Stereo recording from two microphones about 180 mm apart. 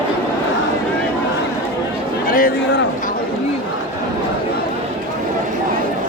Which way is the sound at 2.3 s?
50° left (ahead or behind).